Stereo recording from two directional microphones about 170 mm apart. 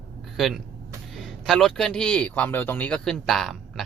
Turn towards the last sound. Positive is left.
turn(degrees=0)  # may be behind; listen again after turning